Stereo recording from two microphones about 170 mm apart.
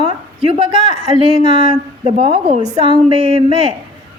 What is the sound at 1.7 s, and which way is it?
Speech, 35° right (ahead or behind).